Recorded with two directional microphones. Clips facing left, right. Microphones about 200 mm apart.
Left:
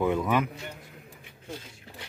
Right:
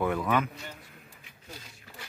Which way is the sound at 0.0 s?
20° left (ahead or behind).